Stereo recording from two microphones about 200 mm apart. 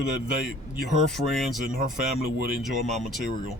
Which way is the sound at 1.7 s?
45° right (ahead or behind).